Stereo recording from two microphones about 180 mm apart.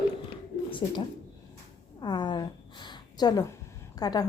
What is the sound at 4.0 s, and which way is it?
Speech, 20° left (ahead or behind).